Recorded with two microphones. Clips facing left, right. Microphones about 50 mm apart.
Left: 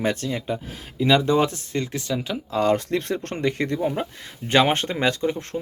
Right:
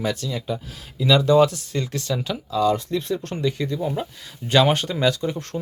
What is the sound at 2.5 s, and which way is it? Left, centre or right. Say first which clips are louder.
Speech: even; left.